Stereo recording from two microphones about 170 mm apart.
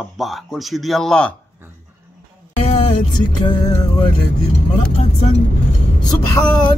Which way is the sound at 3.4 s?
30° left (ahead or behind).